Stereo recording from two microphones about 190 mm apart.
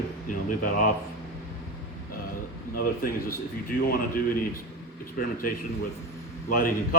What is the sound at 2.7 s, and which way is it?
Speech, 50° left (ahead or behind).